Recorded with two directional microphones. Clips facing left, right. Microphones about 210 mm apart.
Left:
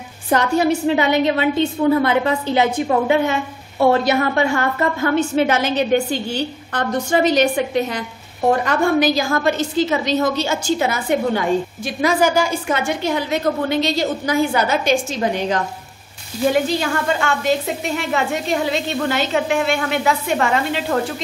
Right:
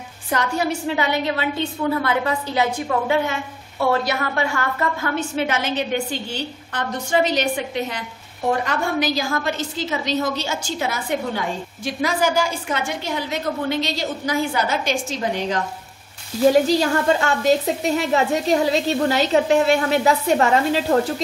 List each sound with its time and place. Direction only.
0.3 s a woman's voice: 20° left (ahead or behind)
5.5 s a woman's voice: 40° left (ahead or behind); by 15.6 s 55° left (ahead or behind)
16.4 s a woman's voice: 35° right (ahead or behind)